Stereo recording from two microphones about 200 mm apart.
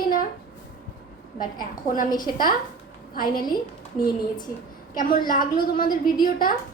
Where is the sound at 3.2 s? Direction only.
45° left (ahead or behind).